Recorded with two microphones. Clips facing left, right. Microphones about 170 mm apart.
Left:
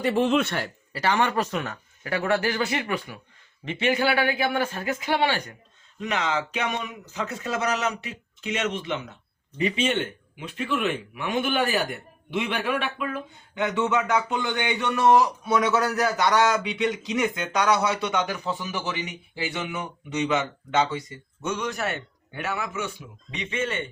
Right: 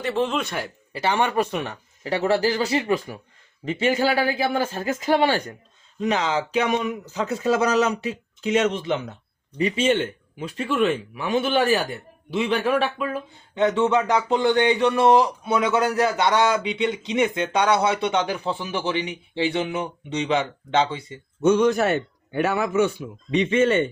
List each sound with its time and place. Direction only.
0.4 s speech: 10° right (ahead or behind)
1.5 s speech: 25° right (ahead or behind)